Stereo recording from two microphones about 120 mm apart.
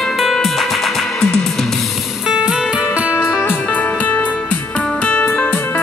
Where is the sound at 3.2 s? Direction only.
20° left (ahead or behind).